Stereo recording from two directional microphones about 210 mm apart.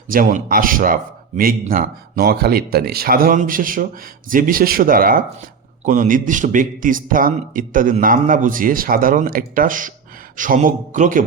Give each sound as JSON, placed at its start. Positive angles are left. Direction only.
{"t": 0.1, "sound": "a man's voice", "side_deg": -40}